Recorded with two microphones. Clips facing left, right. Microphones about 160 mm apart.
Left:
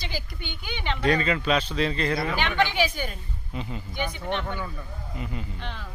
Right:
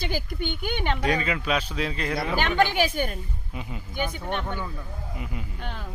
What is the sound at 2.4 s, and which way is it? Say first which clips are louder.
Speech: right 4 dB; 40° right (ahead or behind).